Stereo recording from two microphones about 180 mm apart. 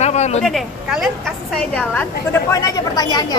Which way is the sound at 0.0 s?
40° left (ahead or behind).